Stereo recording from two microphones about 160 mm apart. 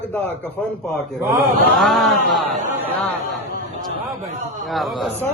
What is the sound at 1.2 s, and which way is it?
Speech, 20° right (ahead or behind).